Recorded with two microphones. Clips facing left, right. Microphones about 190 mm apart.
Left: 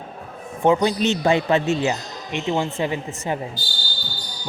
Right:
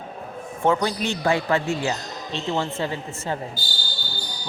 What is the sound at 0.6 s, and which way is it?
Speech, 15° left (ahead or behind).